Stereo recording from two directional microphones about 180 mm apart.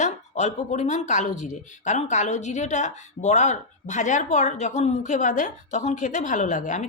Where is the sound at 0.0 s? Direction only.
40° left (ahead or behind).